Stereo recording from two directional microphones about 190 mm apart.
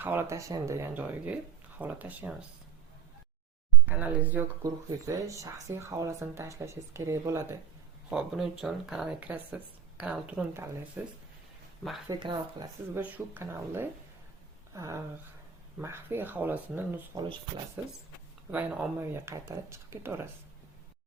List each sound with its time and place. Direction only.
0.0 s speech: 10° right (ahead or behind)
3.8 s speech: 10° right (ahead or behind)
8.1 s speech: centre (ahead or behind)
12.0 s speech: 20° right (ahead or behind)
13.0 s speech: 10° right (ahead or behind)
14.7 s a sound: 15° right (ahead or behind)
15.8 s speech: 15° right (ahead or behind)